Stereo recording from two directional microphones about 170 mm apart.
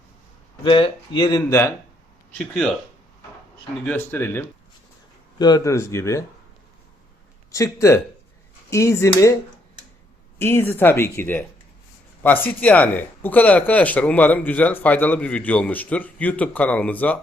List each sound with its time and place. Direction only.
0.6 s speech: 30° left (ahead or behind)
3.8 s speech: 10° left (ahead or behind)
5.4 s speech: 25° left (ahead or behind)
7.5 s speech: 20° left (ahead or behind)
10.3 s speech: 15° left (ahead or behind)